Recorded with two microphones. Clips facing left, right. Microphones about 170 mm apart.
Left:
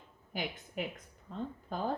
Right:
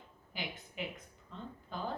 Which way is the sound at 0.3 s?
45° left (ahead or behind).